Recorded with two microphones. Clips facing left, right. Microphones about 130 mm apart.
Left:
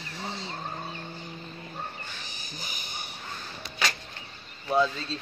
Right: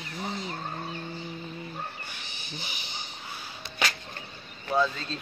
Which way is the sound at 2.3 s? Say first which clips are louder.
Right 1 dB; 40° left (ahead or behind).